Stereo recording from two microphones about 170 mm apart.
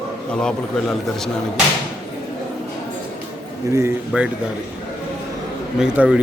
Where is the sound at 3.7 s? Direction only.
15° right (ahead or behind).